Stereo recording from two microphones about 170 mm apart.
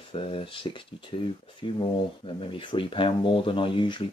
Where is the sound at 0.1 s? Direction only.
30° left (ahead or behind).